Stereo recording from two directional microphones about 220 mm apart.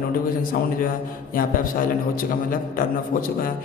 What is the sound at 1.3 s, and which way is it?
A man's voice, 40° left (ahead or behind).